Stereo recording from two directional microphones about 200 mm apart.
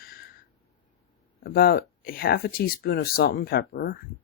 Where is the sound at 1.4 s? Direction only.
50° left (ahead or behind).